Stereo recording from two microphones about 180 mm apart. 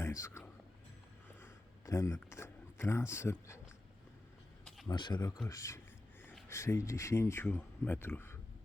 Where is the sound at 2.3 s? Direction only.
15° left (ahead or behind).